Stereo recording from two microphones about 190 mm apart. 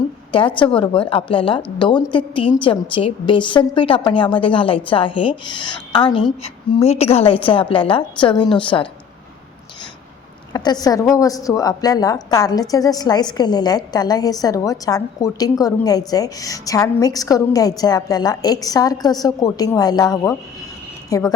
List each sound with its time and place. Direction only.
0.3 s a woman's voice: 25° left (ahead or behind)
10.5 s a woman's voice: 20° left (ahead or behind)